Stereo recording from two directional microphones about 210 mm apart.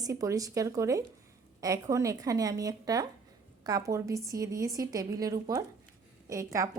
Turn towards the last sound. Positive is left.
turn(degrees=-15)  # may be behind; listen again after turning